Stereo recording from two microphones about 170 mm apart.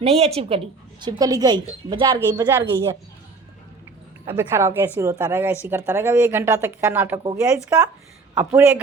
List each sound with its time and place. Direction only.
0.0 s a woman's voice: 35° right (ahead or behind)
1.2 s speech: 20° right (ahead or behind)
2.5 s speech: 15° right (ahead or behind)
4.4 s speech: 15° right (ahead or behind)